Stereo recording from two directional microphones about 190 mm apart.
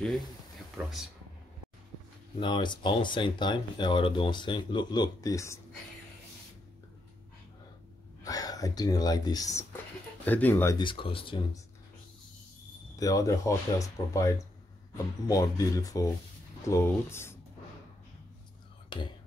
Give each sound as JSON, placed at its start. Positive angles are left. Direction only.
{"t": 0.7, "sound": "speech", "side_deg": 0}
{"t": 2.4, "sound": "speech", "side_deg": 25}
{"t": 8.2, "sound": "speech", "side_deg": 20}
{"t": 10.8, "sound": "speech", "side_deg": 25}
{"t": 12.9, "sound": "speech", "side_deg": 20}
{"t": 18.9, "sound": "speech", "side_deg": 25}